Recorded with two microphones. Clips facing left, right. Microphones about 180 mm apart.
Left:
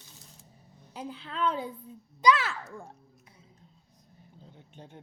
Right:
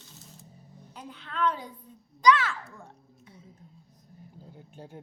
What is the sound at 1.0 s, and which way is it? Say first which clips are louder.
Speech: right 1 dB; 30° left (ahead or behind).